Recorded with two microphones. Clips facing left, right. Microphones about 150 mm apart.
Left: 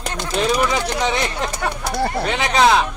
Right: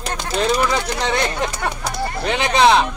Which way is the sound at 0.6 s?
5° left (ahead or behind).